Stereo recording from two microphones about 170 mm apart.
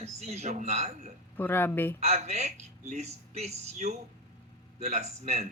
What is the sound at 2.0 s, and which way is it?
A woman's voice, 40° right (ahead or behind).